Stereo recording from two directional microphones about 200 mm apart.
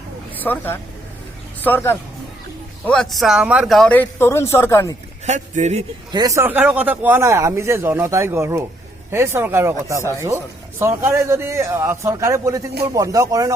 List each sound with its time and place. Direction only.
0.3 s speech: 10° left (ahead or behind)
5.2 s speech: 35° right (ahead or behind)
6.1 s speech: 20° right (ahead or behind)